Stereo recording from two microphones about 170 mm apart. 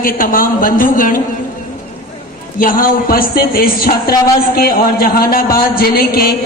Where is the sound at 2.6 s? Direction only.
55° left (ahead or behind).